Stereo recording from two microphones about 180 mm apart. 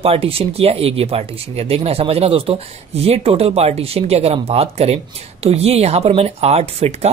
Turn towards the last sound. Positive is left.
turn(degrees=-35)  # may be behind; listen again after turning